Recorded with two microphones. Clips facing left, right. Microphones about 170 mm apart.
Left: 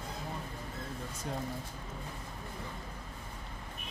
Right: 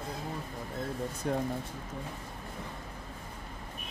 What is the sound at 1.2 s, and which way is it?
Speech, 60° right (ahead or behind).